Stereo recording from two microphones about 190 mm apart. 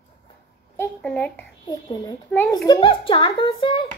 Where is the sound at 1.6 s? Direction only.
20° left (ahead or behind).